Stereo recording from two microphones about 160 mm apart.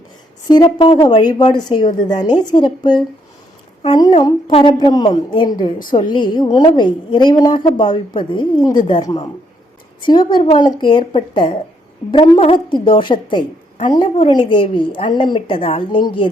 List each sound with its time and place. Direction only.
0.4 s a woman's voice: 25° left (ahead or behind)